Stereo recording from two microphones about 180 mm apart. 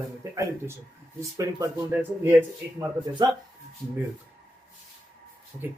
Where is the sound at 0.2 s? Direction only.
20° right (ahead or behind).